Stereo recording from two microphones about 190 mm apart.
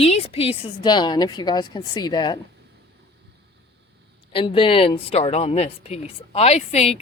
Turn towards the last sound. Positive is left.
turn(degrees=35)  # may be behind; listen again after turning